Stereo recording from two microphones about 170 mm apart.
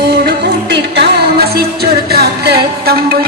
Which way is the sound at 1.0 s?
65° right (ahead or behind).